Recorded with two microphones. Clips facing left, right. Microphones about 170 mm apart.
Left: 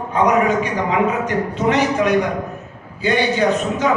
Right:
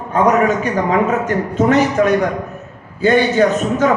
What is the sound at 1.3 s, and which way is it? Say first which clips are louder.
A man's voice: right 4 dB; 45° right (ahead or behind).